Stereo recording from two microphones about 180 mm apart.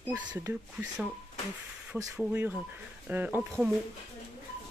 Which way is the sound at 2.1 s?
5° right (ahead or behind).